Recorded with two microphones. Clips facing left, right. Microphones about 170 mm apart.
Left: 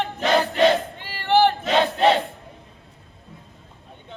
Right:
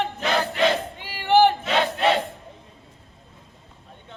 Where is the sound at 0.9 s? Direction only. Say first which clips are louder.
Right 1 dB; 10° right (ahead or behind).